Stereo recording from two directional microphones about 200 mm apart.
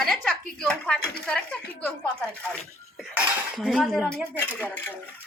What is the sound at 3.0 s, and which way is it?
Speech, centre (ahead or behind).